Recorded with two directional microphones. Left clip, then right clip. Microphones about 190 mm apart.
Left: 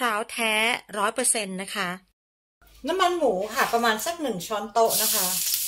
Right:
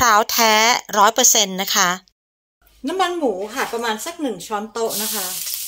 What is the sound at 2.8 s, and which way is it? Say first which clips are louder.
Speech: right 2 dB; 55° right (ahead or behind).